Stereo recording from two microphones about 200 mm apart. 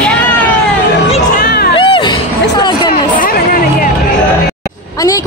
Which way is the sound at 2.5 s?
20° left (ahead or behind).